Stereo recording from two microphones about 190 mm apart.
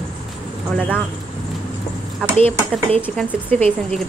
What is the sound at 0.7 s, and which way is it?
Speech, 10° left (ahead or behind).